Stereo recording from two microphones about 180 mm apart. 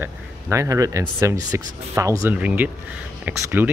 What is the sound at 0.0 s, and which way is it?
Speech, 15° right (ahead or behind).